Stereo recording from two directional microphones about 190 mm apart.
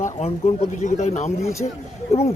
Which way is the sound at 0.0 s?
35° left (ahead or behind).